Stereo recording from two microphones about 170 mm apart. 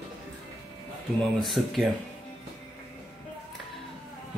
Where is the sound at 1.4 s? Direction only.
Centre (ahead or behind).